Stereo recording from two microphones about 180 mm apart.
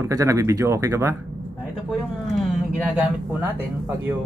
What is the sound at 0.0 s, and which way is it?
Speech, 20° right (ahead or behind).